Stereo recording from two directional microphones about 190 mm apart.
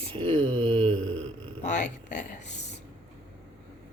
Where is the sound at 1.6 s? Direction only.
40° left (ahead or behind).